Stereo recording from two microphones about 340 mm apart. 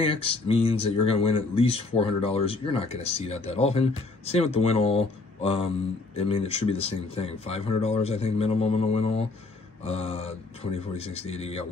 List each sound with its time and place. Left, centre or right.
0.0 s speech: centre